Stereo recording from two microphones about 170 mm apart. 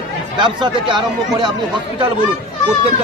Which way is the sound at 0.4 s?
25° right (ahead or behind).